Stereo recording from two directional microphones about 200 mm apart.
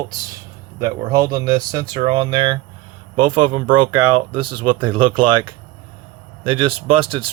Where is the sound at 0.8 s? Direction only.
20° right (ahead or behind).